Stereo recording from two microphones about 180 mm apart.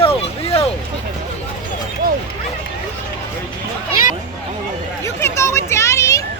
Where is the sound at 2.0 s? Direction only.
50° right (ahead or behind).